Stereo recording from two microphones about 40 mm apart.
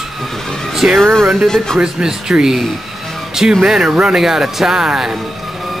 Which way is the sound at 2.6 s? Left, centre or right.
Centre.